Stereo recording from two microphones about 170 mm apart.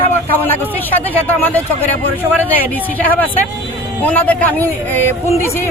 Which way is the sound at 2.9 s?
10° left (ahead or behind).